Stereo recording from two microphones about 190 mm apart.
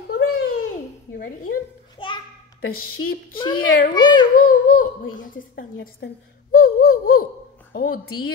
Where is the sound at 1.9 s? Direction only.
25° left (ahead or behind).